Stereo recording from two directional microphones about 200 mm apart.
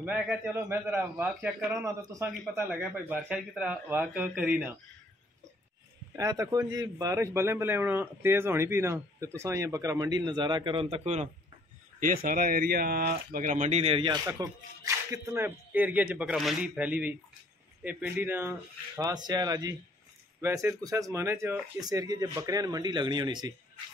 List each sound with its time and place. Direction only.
0.0 s speech: 10° right (ahead or behind)
6.1 s speech: 15° right (ahead or behind)
12.0 s speech: 45° right (ahead or behind); by 23.5 s 20° right (ahead or behind)